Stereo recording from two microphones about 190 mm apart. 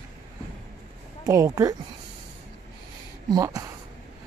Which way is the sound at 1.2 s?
15° right (ahead or behind).